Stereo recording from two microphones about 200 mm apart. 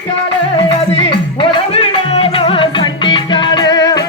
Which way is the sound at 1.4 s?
25° left (ahead or behind).